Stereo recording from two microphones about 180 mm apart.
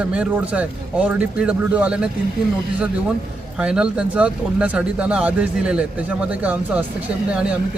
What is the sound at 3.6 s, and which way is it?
A man's voice, 5° right (ahead or behind).